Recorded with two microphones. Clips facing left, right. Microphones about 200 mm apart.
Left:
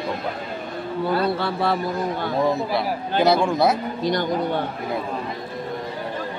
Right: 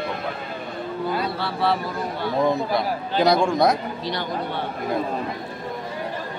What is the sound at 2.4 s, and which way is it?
Speech, 5° left (ahead or behind).